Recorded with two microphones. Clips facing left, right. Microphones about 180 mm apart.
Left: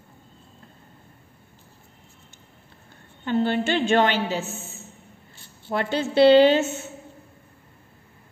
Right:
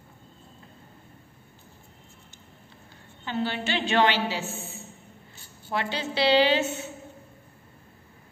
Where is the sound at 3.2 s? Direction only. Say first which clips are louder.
Left 7 dB; 50° left (ahead or behind).